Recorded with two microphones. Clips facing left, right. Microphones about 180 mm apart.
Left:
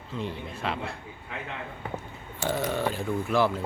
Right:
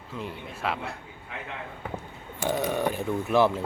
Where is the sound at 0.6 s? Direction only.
5° right (ahead or behind).